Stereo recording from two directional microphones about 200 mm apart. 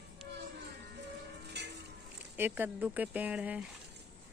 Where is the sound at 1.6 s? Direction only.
60° right (ahead or behind).